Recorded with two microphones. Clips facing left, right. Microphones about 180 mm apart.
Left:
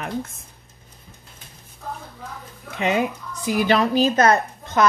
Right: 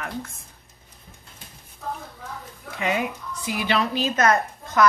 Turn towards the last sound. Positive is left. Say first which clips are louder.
# left 2 dB
turn(degrees=35)  # may be behind; listen again after turning